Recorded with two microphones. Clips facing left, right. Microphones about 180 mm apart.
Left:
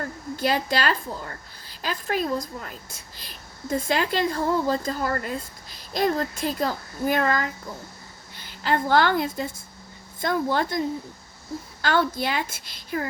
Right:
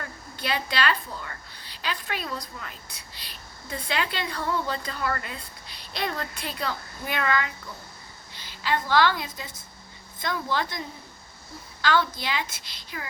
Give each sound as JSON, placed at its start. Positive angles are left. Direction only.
{"t": 0.0, "sound": "a woman's voice", "side_deg": 45}